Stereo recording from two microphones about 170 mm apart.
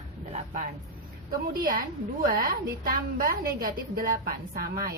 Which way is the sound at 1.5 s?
55° right (ahead or behind).